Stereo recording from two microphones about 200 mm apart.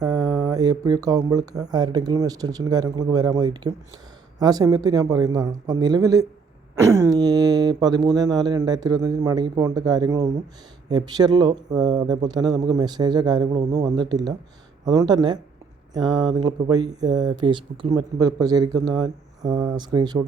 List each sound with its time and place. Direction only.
0.0 s speech: 20° right (ahead or behind)